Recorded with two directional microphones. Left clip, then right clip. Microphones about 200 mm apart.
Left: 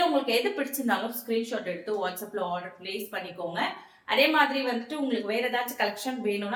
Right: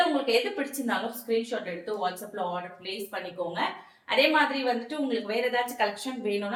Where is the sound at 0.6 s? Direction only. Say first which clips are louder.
Left 1 dB; 15° left (ahead or behind).